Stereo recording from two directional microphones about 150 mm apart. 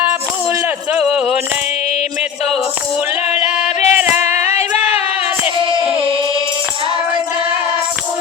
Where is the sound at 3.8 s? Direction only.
50° left (ahead or behind).